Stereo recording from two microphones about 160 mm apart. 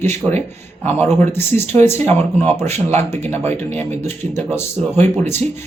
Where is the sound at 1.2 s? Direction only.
15° left (ahead or behind).